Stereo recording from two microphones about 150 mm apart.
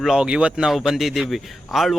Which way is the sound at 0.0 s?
5° right (ahead or behind).